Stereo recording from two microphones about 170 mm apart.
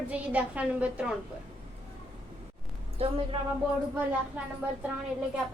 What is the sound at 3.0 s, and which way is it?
Speech, 35° right (ahead or behind).